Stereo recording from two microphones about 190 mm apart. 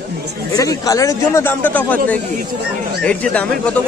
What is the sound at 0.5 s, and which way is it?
Speech, 15° left (ahead or behind).